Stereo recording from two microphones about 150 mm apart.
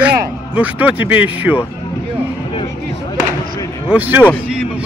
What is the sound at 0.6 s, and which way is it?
Speech, 10° right (ahead or behind).